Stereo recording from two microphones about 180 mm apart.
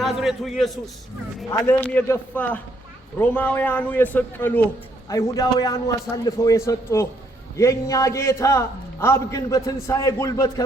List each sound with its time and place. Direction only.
0.0 s a man's voice: centre (ahead or behind)
1.5 s a man's voice: 10° left (ahead or behind)